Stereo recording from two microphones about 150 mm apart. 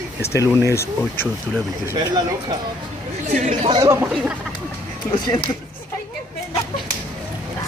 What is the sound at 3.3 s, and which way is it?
Speech, 55° right (ahead or behind).